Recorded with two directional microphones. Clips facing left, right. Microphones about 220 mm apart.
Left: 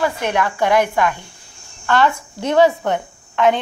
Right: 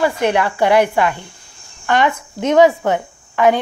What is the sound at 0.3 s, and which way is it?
A woman's voice, 10° right (ahead or behind).